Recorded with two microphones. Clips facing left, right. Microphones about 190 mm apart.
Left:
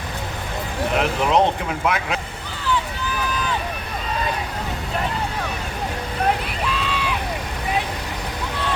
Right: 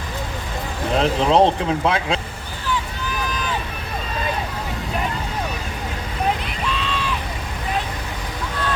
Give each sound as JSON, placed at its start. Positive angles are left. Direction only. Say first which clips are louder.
{"t": 0.9, "sound": "speech", "louder": "right 3 dB", "side_deg": -30}